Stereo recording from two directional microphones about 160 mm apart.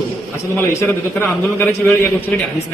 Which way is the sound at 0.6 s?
15° left (ahead or behind).